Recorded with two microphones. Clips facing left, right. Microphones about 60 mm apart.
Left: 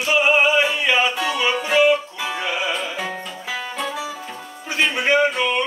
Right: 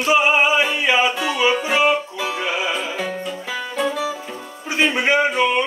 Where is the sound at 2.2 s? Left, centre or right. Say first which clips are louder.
Right 1 dB; centre.